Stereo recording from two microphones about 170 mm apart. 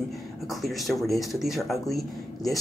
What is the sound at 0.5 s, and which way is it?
Speech, centre (ahead or behind).